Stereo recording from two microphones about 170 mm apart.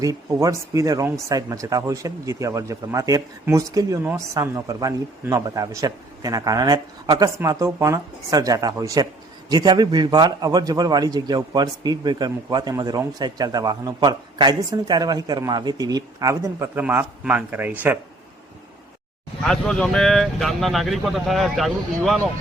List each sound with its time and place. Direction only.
0.0 s speech: 20° right (ahead or behind)
19.4 s speech: 5° left (ahead or behind)